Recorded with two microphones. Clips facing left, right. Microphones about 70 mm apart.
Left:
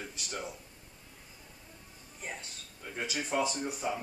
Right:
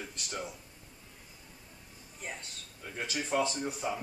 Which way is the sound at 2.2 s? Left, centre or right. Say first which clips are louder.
Even; centre.